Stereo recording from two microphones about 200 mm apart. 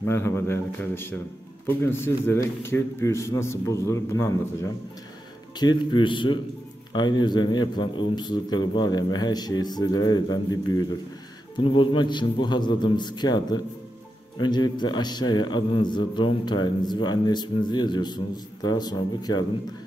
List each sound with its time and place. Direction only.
0.0 s a man's voice: 10° left (ahead or behind)
5.6 s a man's voice: 20° left (ahead or behind)